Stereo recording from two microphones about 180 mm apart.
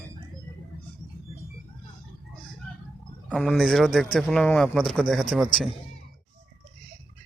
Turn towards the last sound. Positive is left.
turn(degrees=0)  # may be behind; listen again after turning